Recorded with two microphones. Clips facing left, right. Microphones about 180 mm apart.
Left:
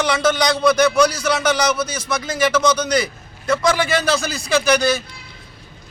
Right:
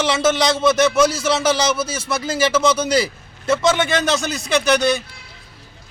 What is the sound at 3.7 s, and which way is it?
Speech, centre (ahead or behind).